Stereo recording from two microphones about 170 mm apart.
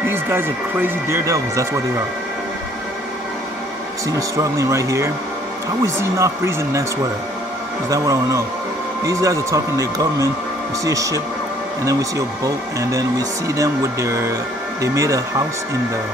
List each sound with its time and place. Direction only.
0.0 s speech: 15° right (ahead or behind)
4.4 s speech: 20° right (ahead or behind)
7.9 s speech: 20° right (ahead or behind)